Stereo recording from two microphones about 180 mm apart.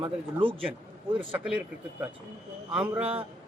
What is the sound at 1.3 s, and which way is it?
Speech, 5° right (ahead or behind).